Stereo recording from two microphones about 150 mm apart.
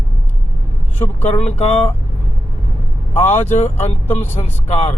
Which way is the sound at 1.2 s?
45° left (ahead or behind).